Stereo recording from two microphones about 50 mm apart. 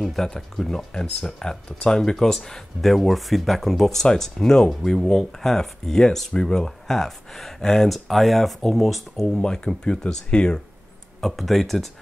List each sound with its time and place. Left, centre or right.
0.0 s speech: centre
9.2 s speech: centre
11.1 s speech: centre